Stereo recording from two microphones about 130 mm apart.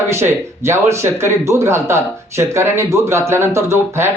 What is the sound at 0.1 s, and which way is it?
Speech, 20° right (ahead or behind).